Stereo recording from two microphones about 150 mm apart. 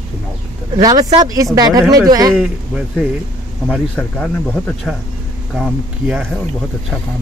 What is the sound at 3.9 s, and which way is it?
Speech, 10° left (ahead or behind).